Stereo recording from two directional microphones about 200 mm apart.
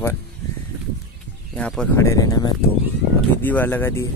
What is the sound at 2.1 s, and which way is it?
Speech, 15° left (ahead or behind).